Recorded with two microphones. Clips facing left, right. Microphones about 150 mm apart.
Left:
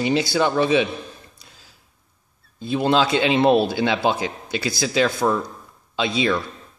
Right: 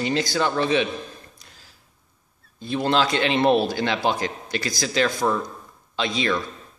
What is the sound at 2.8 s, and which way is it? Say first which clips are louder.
Speech: left 3 dB; 15° left (ahead or behind).